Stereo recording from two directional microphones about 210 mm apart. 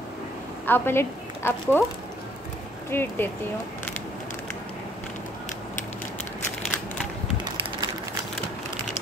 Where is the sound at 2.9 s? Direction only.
10° left (ahead or behind).